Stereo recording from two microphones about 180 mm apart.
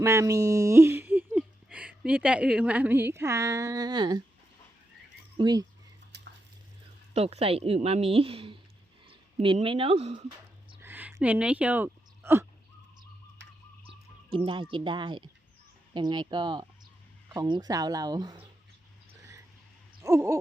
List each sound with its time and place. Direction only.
0.0 s speech: 15° right (ahead or behind)
5.4 s speech: 20° right (ahead or behind)
6.1 s a sound: 70° right (ahead or behind)
7.1 s a woman's voice: 35° right (ahead or behind)
9.0 s a sound: 30° right (ahead or behind)
10.8 s a sound: 10° right (ahead or behind)
13.4 s tick-tock: 85° right
13.8 s speech: 30° right (ahead or behind)
20.0 s owl: 15° right (ahead or behind)